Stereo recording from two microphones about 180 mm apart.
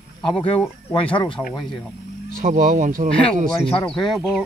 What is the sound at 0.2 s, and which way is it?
Speech, 30° left (ahead or behind).